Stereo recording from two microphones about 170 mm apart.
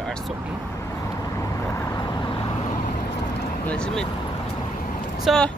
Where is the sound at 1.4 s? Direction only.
20° left (ahead or behind).